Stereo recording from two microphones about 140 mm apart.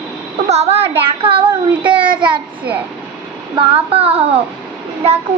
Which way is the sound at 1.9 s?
35° right (ahead or behind).